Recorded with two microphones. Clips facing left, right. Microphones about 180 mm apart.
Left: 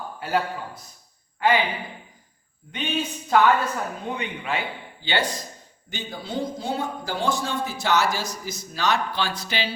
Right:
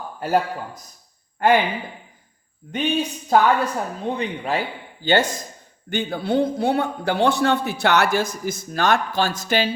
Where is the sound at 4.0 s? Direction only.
35° right (ahead or behind).